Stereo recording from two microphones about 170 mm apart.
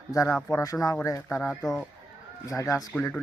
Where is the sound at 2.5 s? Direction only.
20° left (ahead or behind).